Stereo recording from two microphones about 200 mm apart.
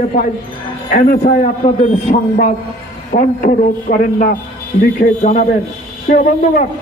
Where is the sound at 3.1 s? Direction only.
40° left (ahead or behind).